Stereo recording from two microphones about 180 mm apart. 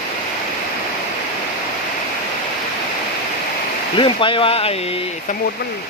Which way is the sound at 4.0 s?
30° left (ahead or behind).